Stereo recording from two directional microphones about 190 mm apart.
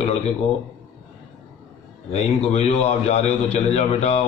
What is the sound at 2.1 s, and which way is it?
Speech, 35° left (ahead or behind).